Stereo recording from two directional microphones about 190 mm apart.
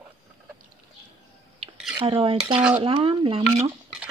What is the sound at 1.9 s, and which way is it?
Speech, 25° right (ahead or behind).